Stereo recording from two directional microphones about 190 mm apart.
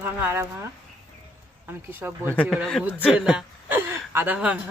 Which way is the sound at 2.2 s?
5° left (ahead or behind).